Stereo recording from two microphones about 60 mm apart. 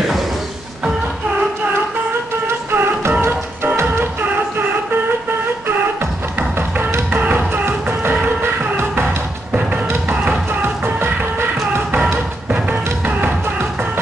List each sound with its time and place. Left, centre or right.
2.4 s music: right
7.1 s music: right
9.5 s music: right
10.5 s music: right
11.7 s music: right